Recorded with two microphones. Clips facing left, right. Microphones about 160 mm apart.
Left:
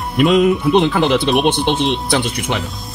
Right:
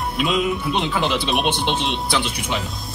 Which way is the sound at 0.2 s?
55° left (ahead or behind).